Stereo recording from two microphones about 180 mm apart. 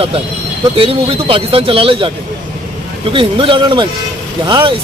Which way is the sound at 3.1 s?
30° right (ahead or behind).